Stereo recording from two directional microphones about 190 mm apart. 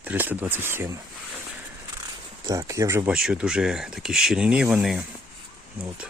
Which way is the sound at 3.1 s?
5° right (ahead or behind).